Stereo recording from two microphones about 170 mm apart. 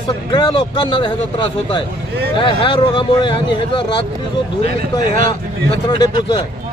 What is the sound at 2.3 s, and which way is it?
Speech, 30° left (ahead or behind).